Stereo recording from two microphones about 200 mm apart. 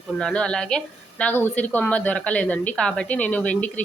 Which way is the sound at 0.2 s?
5° left (ahead or behind).